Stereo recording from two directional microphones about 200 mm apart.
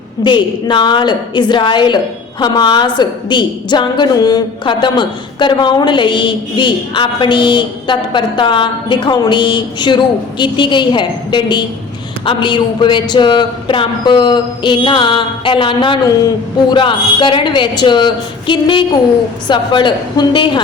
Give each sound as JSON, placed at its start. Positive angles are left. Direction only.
{"t": 0.3, "sound": "a woman's voice", "side_deg": 25}